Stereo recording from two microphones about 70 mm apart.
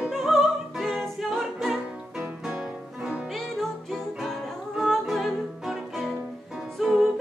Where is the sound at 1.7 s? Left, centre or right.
Centre.